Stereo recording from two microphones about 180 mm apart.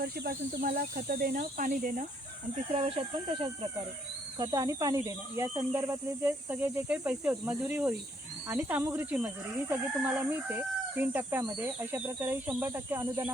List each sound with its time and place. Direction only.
0.0 s speech: 60° right (ahead or behind)
2.7 s speech: 35° right (ahead or behind)
4.4 s speech: 20° right (ahead or behind)